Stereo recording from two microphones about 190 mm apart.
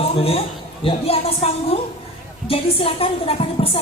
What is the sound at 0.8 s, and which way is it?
Speech, 30° left (ahead or behind).